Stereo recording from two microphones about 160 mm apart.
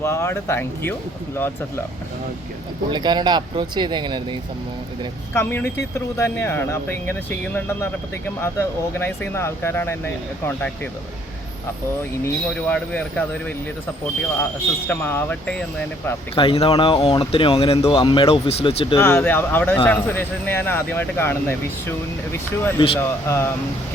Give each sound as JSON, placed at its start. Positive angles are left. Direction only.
{"t": 0.0, "sound": "speech", "side_deg": 15}
{"t": 2.9, "sound": "speech", "side_deg": -25}
{"t": 5.3, "sound": "speech", "side_deg": 15}
{"t": 12.2, "sound": "speech", "side_deg": 10}
{"t": 14.8, "sound": "speech", "side_deg": 15}
{"t": 16.3, "sound": "speech", "side_deg": 35}
{"t": 18.9, "sound": "speech", "side_deg": 15}